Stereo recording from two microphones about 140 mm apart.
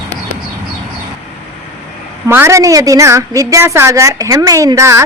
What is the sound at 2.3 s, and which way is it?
A woman's voice, 20° right (ahead or behind).